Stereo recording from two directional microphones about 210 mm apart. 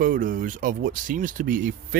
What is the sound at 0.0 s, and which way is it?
Speech, 40° right (ahead or behind).